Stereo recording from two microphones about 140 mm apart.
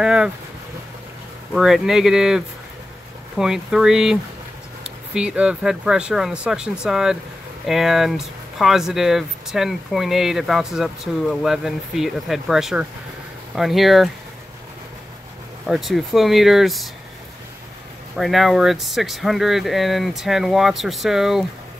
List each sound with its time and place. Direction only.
0.0 s speech: 5° right (ahead or behind)
1.5 s speech: centre (ahead or behind)
15.6 s speech: centre (ahead or behind)
18.1 s speech: centre (ahead or behind)